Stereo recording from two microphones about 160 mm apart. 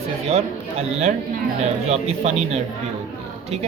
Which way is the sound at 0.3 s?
40° right (ahead or behind).